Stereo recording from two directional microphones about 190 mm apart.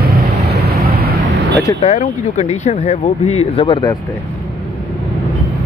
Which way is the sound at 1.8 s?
40° left (ahead or behind).